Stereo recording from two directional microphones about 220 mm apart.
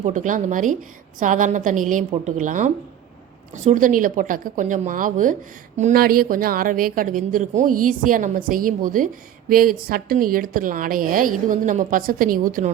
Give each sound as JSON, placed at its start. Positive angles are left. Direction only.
{"t": 0.0, "sound": "speech", "side_deg": -35}